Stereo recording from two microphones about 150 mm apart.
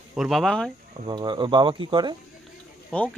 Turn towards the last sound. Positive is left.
turn(degrees=10)  # may be behind; listen again after turning